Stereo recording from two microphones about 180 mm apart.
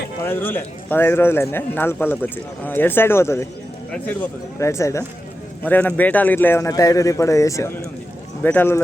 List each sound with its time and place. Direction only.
0.3 s speech: 10° left (ahead or behind)